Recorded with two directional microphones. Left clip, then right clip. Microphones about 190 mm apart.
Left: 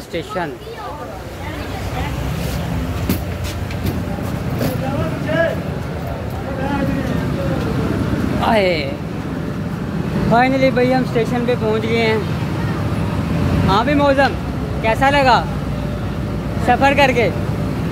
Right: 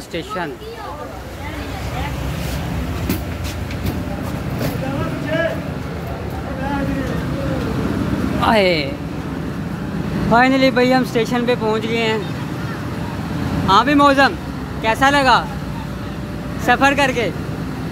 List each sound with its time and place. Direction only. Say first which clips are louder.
8.4 s speech: right 1 dB; 25° right (ahead or behind)
10.3 s speech: right 1 dB; 15° right (ahead or behind)
13.7 s speech: right 3 dB; 15° right (ahead or behind)
16.6 s speech: even; 20° right (ahead or behind)
16.9 s speech: left 3 dB; 5° right (ahead or behind)